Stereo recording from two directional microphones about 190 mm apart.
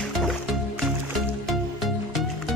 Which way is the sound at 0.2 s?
Centre (ahead or behind).